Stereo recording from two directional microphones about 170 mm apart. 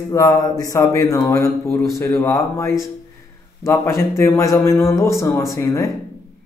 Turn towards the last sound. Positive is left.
turn(degrees=20)  # may be behind; listen again after turning